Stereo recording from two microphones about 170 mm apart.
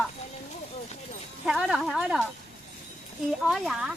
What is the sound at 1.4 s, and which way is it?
Speech, 5° right (ahead or behind).